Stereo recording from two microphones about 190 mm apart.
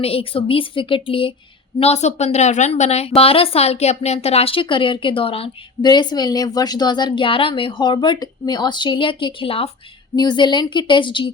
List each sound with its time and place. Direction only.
0.0 s a woman's voice: 30° left (ahead or behind)